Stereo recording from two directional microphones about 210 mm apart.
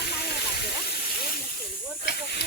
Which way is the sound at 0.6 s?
50° left (ahead or behind).